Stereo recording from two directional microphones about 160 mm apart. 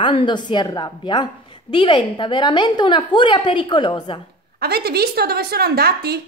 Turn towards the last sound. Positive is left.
turn(degrees=-75)  # may be behind; listen again after turning